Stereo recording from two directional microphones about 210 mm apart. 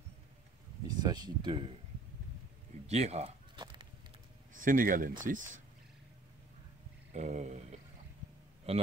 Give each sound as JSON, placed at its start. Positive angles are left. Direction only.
{"t": 0.8, "sound": "speech", "side_deg": -20}
{"t": 2.9, "sound": "speech", "side_deg": -30}
{"t": 4.6, "sound": "speech", "side_deg": -40}
{"t": 7.1, "sound": "a sound", "side_deg": -35}